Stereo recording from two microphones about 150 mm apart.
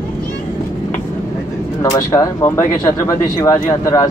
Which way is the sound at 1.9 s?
20° left (ahead or behind).